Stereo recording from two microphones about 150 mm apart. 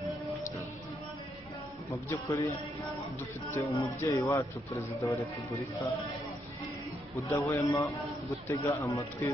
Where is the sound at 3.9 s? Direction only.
20° left (ahead or behind).